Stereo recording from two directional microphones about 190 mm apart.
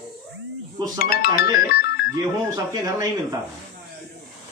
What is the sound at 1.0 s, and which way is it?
Speech, 50° left (ahead or behind).